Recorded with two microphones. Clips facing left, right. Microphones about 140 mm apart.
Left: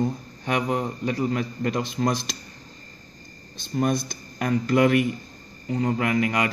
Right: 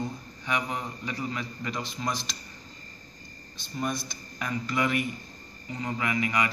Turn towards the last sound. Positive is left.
turn(degrees=50)  # may be behind; listen again after turning